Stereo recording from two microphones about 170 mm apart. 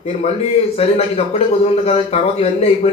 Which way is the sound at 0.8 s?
35° left (ahead or behind).